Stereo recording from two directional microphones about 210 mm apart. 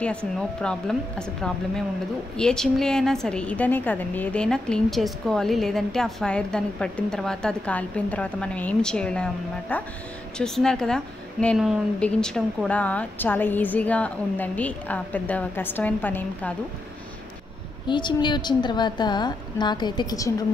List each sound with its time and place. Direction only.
0.4 s a woman's voice: 5° left (ahead or behind)
17.8 s a woman's voice: 20° left (ahead or behind)